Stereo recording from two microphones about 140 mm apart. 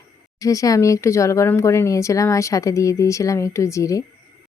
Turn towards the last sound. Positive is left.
turn(degrees=25)  # may be behind; listen again after turning